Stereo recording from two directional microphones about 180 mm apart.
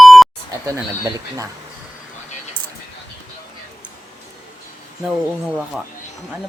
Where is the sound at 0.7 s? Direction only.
20° right (ahead or behind).